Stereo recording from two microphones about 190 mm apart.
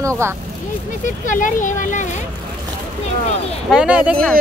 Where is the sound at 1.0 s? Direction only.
45° left (ahead or behind).